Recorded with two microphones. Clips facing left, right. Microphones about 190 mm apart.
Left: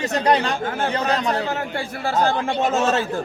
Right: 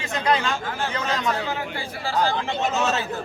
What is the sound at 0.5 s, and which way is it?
A man's voice, 55° left (ahead or behind).